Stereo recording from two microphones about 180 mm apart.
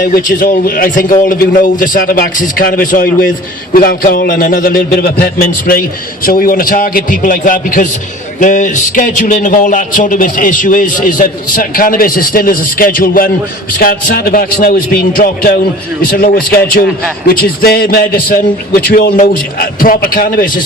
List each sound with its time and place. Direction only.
0.0 s a man's voice: 50° left (ahead or behind)
16.8 s a man's voice: centre (ahead or behind)
17.6 s a man's voice: 55° left (ahead or behind)